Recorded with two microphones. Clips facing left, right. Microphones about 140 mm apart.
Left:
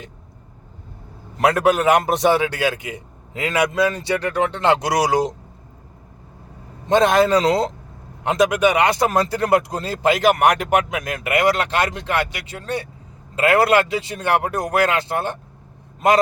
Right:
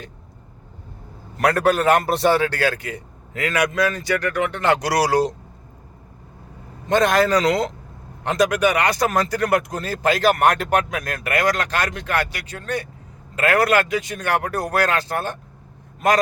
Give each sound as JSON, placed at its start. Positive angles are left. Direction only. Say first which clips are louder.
{"t": 1.4, "sound": "speech", "louder": "left 1 dB", "side_deg": 20}
{"t": 6.8, "sound": "speech", "louder": "left 2 dB", "side_deg": 25}
{"t": 8.2, "sound": "a man's voice", "louder": "left 2 dB", "side_deg": 20}